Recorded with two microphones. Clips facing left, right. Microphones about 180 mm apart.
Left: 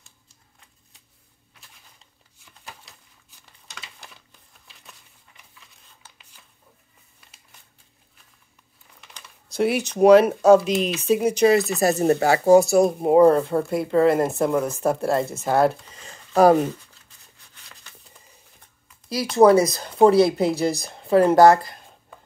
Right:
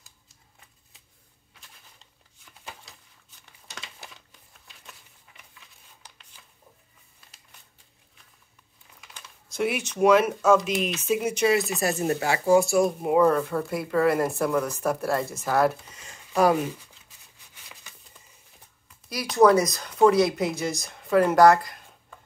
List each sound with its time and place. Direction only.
6.0 s a sound: 15° right (ahead or behind)
9.5 s speech: 35° left (ahead or behind)
19.3 s speech: 25° left (ahead or behind)